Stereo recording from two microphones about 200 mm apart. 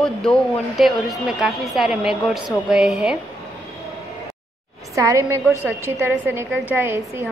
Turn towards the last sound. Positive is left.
turn(degrees=-10)  # may be behind; listen again after turning